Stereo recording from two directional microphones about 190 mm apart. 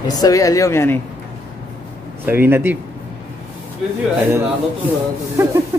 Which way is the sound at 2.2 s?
10° right (ahead or behind).